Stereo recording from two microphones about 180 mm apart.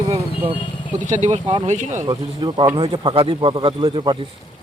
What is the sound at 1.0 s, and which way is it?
Speech, 45° right (ahead or behind).